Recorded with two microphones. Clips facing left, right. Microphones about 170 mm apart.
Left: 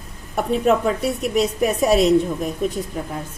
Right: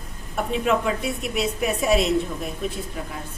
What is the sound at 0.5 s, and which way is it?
A woman's voice, 40° left (ahead or behind).